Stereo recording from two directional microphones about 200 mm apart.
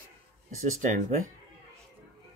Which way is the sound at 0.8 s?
40° right (ahead or behind).